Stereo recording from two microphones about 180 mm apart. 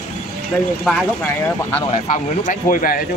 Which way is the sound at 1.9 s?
45° left (ahead or behind).